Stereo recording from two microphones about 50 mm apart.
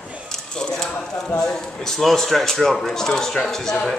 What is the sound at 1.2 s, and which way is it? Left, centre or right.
Speech, left.